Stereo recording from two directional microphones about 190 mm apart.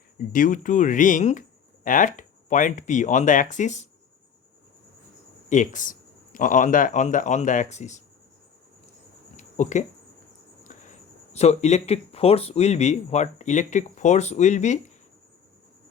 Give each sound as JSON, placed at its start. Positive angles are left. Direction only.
{"t": 0.3, "sound": "speech", "side_deg": 40}
{"t": 5.5, "sound": "speech", "side_deg": 40}
{"t": 9.3, "sound": "a sound", "side_deg": 40}
{"t": 11.3, "sound": "speech", "side_deg": 35}